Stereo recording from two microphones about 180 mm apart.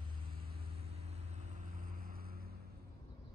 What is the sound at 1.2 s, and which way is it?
Vehicle, 45° right (ahead or behind).